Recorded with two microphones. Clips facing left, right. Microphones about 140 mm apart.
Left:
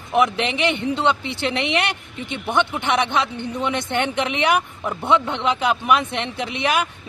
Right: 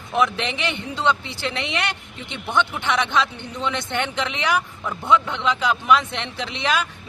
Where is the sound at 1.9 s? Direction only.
15° left (ahead or behind).